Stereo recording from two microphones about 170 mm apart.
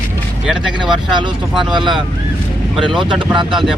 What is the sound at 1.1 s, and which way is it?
Speech, 25° right (ahead or behind).